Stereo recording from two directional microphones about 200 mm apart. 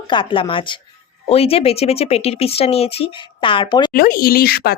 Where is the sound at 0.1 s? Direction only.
25° left (ahead or behind).